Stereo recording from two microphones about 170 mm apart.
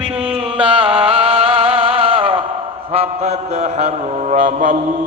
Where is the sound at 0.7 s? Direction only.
30° right (ahead or behind).